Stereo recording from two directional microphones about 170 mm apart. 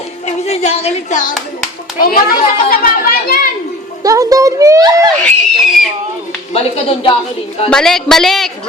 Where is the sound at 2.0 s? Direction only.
60° left (ahead or behind).